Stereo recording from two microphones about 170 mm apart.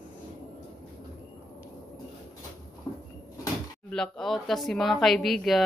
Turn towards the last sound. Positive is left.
turn(degrees=0)  # may be behind; listen again after turning